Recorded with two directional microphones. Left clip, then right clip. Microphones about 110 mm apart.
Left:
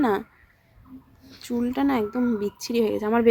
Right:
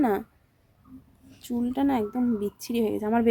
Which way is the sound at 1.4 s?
20° right (ahead or behind).